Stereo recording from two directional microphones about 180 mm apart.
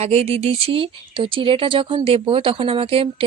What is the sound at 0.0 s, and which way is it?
Speech, 35° right (ahead or behind).